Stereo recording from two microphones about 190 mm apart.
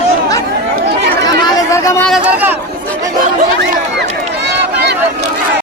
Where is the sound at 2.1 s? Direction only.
5° right (ahead or behind).